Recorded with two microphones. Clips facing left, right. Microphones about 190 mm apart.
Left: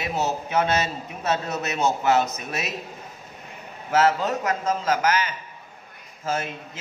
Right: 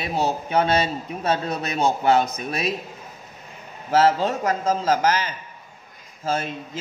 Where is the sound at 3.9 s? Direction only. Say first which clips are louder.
Right 2 dB; 30° right (ahead or behind).